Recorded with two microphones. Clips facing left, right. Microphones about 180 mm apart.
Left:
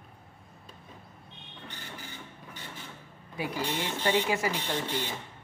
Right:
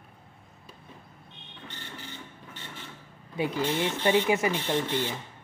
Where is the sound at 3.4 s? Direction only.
25° right (ahead or behind).